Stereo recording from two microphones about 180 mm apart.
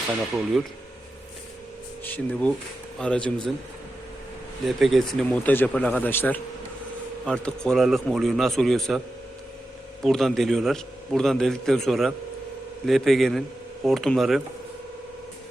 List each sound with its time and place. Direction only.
2.0 s a man's voice: 10° left (ahead or behind)
4.6 s a man's voice: centre (ahead or behind)
10.0 s a man's voice: centre (ahead or behind)